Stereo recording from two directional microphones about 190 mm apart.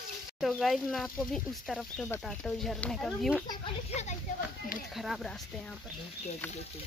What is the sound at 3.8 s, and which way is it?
Speech, 35° left (ahead or behind).